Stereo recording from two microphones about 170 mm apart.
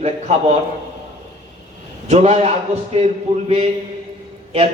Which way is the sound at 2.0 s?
40° right (ahead or behind).